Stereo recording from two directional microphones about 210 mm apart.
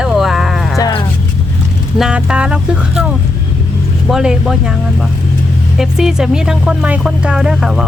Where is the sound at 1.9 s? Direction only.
5° right (ahead or behind).